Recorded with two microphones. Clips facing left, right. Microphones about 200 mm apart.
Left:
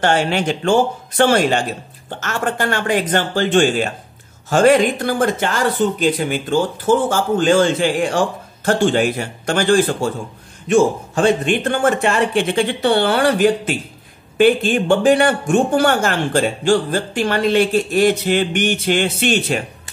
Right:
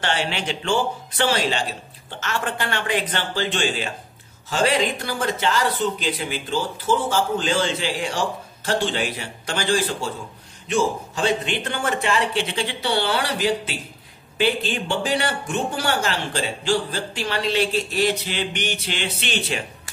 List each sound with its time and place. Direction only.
0.0 s speech: 45° left (ahead or behind)